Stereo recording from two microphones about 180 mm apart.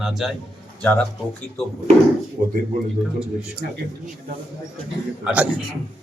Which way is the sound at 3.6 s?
60° right (ahead or behind).